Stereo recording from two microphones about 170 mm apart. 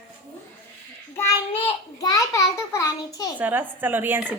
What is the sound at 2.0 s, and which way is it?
A child's voice, 20° left (ahead or behind).